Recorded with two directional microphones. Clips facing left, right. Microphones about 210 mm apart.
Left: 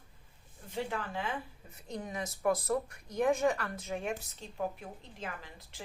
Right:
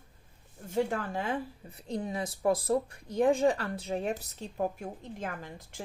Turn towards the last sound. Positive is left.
turn(degrees=-50)  # may be behind; listen again after turning